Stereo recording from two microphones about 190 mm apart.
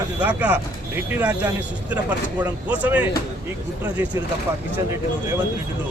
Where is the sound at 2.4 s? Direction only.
10° right (ahead or behind).